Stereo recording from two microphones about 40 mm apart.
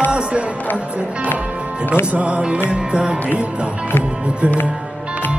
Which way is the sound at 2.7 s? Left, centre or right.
Right.